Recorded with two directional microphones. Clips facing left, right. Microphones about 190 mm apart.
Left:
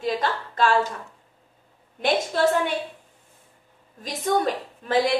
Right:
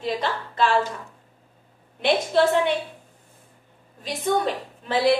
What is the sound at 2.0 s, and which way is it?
Speech, 45° left (ahead or behind).